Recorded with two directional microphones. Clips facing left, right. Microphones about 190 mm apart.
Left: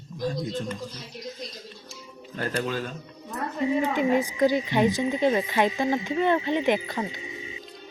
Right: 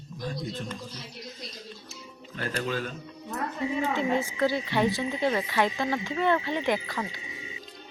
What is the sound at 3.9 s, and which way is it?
Speech, 15° left (ahead or behind).